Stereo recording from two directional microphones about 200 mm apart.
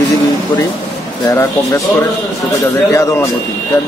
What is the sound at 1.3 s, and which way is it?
A man's voice, 15° left (ahead or behind).